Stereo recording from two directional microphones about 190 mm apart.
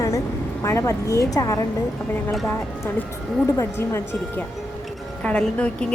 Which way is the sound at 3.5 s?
15° left (ahead or behind).